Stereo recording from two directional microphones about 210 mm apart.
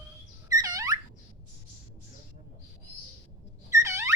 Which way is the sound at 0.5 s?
15° right (ahead or behind).